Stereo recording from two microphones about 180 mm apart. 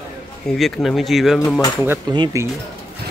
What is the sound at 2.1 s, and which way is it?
Speech, 20° right (ahead or behind).